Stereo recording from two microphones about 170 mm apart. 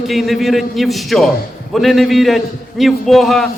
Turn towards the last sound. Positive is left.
turn(degrees=0)  # may be behind; listen again after turning